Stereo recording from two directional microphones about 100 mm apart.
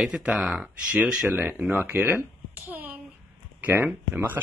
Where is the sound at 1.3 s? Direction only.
20° right (ahead or behind).